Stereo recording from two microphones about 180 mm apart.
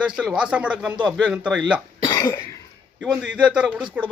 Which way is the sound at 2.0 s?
20° left (ahead or behind).